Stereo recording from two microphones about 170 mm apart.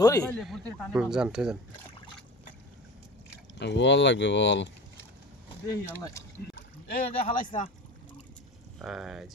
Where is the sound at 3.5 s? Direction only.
90° left.